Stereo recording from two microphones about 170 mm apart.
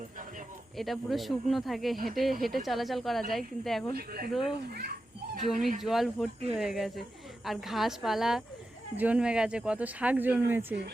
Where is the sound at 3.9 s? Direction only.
65° right (ahead or behind).